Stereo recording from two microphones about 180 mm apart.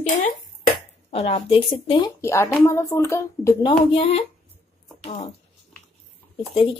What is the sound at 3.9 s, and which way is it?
Speech, 30° left (ahead or behind).